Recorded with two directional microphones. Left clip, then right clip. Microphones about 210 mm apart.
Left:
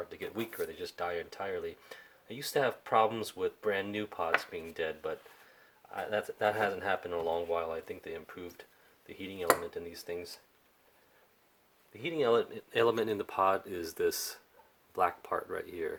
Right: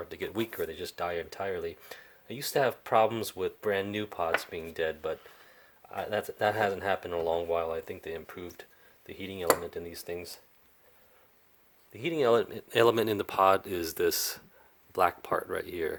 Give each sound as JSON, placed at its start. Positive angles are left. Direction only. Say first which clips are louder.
{"t": 0.1, "sound": "speech", "louder": "right 5 dB", "side_deg": -45}
{"t": 11.9, "sound": "speech", "louder": "right 3 dB", "side_deg": -45}